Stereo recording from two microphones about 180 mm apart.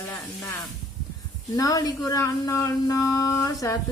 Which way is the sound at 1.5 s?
20° left (ahead or behind).